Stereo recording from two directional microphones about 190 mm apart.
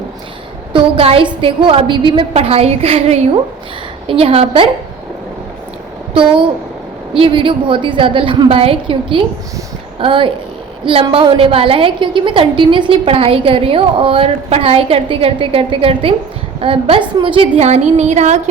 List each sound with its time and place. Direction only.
0.7 s a woman's voice: 30° right (ahead or behind)
7.2 s a woman's voice: 30° right (ahead or behind)